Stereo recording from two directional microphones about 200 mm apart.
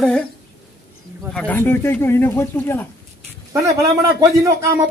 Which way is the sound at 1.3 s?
5° left (ahead or behind).